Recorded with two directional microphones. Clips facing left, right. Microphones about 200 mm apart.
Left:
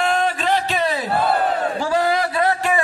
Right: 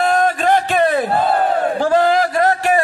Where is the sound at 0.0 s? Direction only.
45° right (ahead or behind).